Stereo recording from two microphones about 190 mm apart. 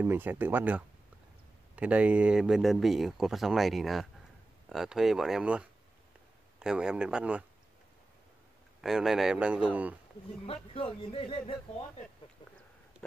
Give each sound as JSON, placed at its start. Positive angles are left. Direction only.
{"t": 0.0, "sound": "speech", "side_deg": -10}
{"t": 8.8, "sound": "speech", "side_deg": 0}
{"t": 10.4, "sound": "speech", "side_deg": 30}